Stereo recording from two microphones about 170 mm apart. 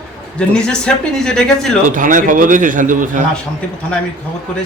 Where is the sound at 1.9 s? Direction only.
50° right (ahead or behind).